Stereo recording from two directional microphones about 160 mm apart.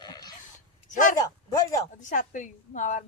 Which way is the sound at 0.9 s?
50° left (ahead or behind).